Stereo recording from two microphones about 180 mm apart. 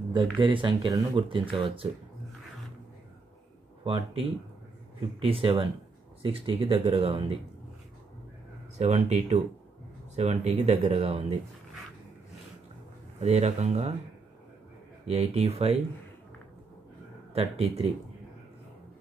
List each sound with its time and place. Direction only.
0.1 s speech: 25° right (ahead or behind)
3.8 s speech: 30° right (ahead or behind)
5.2 s speech: 30° right (ahead or behind)
8.7 s speech: 40° right (ahead or behind)
13.2 s speech: 35° right (ahead or behind)
15.0 s speech: 35° right (ahead or behind)
17.3 s speech: 35° right (ahead or behind)